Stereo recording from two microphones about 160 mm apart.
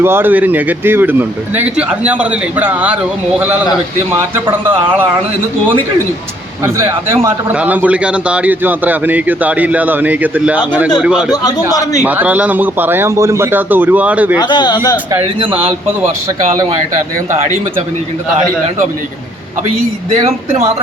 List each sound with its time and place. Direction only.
0.0 s a man's voice: 15° right (ahead or behind)
6.7 s a man's voice: 15° right (ahead or behind)
11.3 s a man's voice: 25° left (ahead or behind)
12.0 s a man's voice: 10° right (ahead or behind)
14.3 s a man's voice: 30° left (ahead or behind)
20.2 s speech: 40° right (ahead or behind)